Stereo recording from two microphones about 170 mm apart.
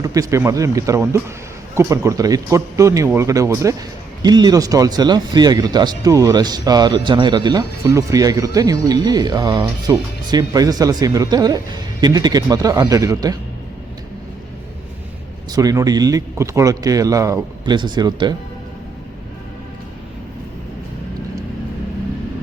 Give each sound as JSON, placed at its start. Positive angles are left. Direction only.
{"t": 0.0, "sound": "speech", "side_deg": -20}
{"t": 15.5, "sound": "speech", "side_deg": -20}